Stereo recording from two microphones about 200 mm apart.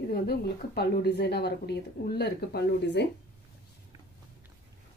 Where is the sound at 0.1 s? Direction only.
55° left (ahead or behind).